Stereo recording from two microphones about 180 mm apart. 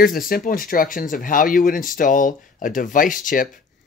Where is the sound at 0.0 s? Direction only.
50° left (ahead or behind).